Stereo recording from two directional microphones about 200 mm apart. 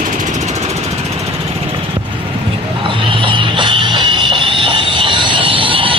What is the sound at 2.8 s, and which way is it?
Music, 25° right (ahead or behind).